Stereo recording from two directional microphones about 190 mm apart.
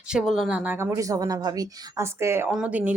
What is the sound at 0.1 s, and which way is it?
Speech, centre (ahead or behind).